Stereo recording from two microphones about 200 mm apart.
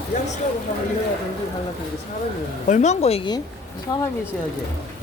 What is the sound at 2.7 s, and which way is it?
Speech, 35° left (ahead or behind).